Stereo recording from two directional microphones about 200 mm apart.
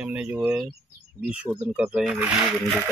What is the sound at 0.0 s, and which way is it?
Speech, 5° right (ahead or behind).